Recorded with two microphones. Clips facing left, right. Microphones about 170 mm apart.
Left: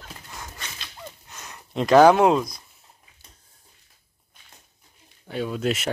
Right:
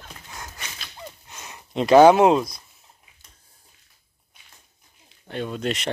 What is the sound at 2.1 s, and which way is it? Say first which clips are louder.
Speech: right 2 dB; 5° right (ahead or behind).